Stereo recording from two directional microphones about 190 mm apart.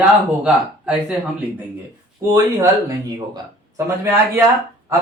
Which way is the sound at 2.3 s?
15° right (ahead or behind).